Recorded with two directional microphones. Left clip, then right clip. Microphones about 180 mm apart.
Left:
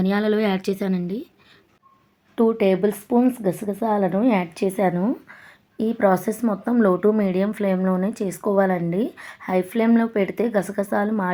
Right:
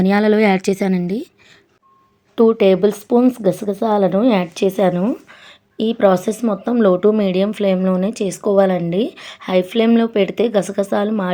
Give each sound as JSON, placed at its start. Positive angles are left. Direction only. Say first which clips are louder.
{"t": 0.0, "sound": "speech", "louder": "right 7 dB", "side_deg": -30}
{"t": 2.3, "sound": "speech", "louder": "right 6 dB", "side_deg": -25}